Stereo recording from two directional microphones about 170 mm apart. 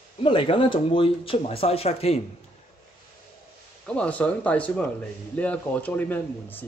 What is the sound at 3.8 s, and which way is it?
Speech, 10° left (ahead or behind).